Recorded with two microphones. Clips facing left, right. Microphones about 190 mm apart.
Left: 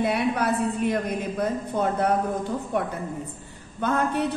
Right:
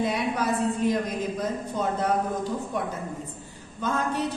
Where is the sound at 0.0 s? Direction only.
60° left (ahead or behind).